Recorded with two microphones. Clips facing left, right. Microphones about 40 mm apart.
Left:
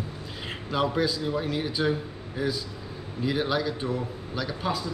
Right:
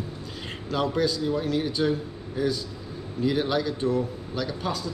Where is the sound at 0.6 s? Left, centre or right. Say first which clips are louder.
Right 1 dB; centre.